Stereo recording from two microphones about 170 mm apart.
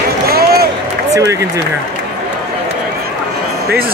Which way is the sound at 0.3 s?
65° right (ahead or behind).